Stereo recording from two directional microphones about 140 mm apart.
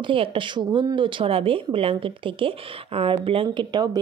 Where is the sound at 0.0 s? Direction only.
40° right (ahead or behind).